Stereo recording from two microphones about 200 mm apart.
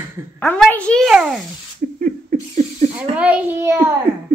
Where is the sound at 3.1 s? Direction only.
5° right (ahead or behind).